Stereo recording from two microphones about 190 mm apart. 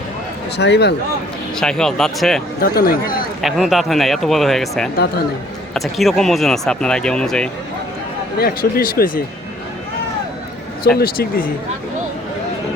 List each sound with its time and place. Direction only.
0.5 s a man's voice: 65° left (ahead or behind)
1.5 s speech: 5° left (ahead or behind)
2.6 s speech: 50° left (ahead or behind)
3.4 s speech: centre (ahead or behind)
8.4 s speech: 50° left (ahead or behind)
10.9 s speech: 55° left (ahead or behind)